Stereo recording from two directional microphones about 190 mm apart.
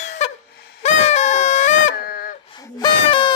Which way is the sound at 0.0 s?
35° left (ahead or behind).